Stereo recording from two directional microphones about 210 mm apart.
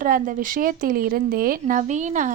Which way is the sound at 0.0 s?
40° right (ahead or behind).